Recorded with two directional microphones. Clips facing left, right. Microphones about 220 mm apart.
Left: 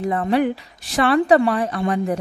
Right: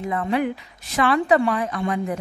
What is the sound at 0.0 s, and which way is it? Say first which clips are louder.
A woman's voice: left 4 dB; 35° left (ahead or behind).